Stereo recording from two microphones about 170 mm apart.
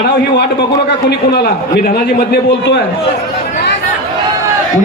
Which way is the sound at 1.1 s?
70° left (ahead or behind).